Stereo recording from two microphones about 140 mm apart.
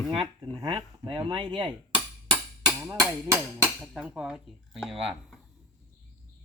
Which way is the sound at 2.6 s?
20° right (ahead or behind).